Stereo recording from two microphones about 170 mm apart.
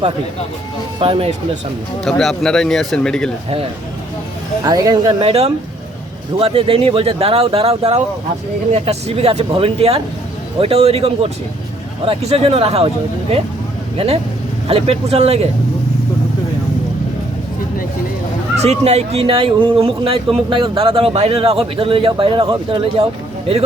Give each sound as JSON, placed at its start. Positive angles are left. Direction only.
{"t": 0.9, "sound": "speech", "side_deg": -30}
{"t": 2.0, "sound": "speech", "side_deg": 0}
{"t": 4.6, "sound": "speech", "side_deg": -25}
{"t": 5.2, "sound": "speech", "side_deg": -40}
{"t": 13.9, "sound": "speech", "side_deg": -35}
{"t": 18.6, "sound": "speech", "side_deg": -40}